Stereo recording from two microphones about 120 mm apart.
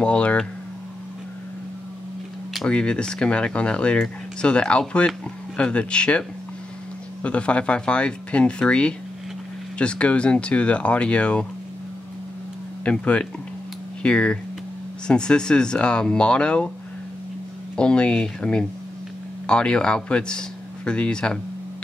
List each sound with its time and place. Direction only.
0.0 s speech: 10° left (ahead or behind)
2.5 s speech: 5° left (ahead or behind)
12.8 s speech: 10° left (ahead or behind)
17.7 s a man's voice: 10° left (ahead or behind)